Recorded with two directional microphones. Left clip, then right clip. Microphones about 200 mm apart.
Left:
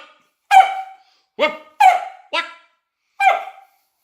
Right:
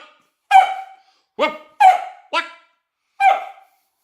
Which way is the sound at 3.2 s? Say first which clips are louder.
Right 1 dB; 10° right (ahead or behind).